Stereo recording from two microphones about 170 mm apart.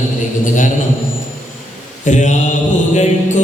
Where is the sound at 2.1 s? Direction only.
45° left (ahead or behind).